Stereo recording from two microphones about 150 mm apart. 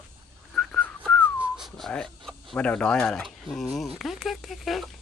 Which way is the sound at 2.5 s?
5° left (ahead or behind).